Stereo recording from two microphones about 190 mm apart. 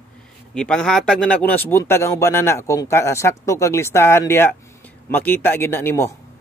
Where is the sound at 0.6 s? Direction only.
5° left (ahead or behind).